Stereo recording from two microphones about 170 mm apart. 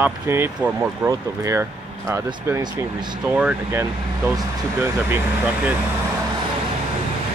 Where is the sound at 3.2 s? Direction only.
5° right (ahead or behind).